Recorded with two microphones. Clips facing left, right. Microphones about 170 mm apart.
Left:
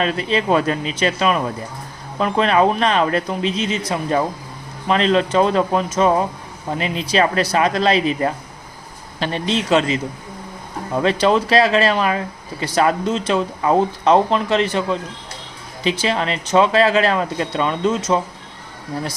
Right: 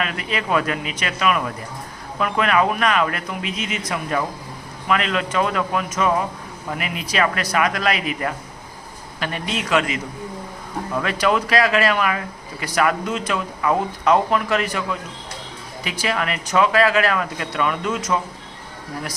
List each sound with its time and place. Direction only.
0.0 s speech: 30° left (ahead or behind)